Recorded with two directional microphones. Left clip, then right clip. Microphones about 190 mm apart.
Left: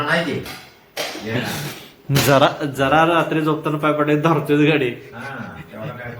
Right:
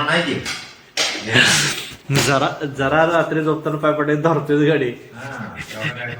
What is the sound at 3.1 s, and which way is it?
A man's voice, centre (ahead or behind).